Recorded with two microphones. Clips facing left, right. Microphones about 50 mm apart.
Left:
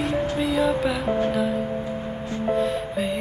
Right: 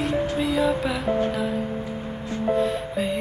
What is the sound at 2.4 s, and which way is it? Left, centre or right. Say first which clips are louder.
Music: right 1 dB; centre.